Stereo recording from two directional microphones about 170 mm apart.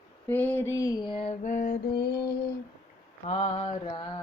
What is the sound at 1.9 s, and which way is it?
Mantra, 70° left (ahead or behind).